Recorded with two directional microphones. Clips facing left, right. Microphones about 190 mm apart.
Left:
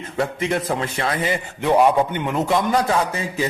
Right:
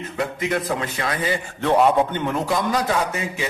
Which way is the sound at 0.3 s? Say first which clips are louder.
Left 1 dB; 30° left (ahead or behind).